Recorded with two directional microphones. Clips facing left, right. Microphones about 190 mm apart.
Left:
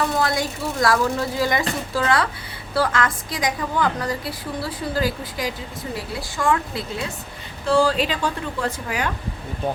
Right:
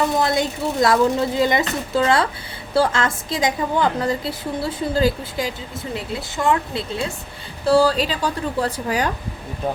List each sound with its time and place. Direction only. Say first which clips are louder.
0.0 s a woman's voice: right 3 dB; 20° right (ahead or behind)
7.6 s speech: right 3 dB; 40° right (ahead or behind)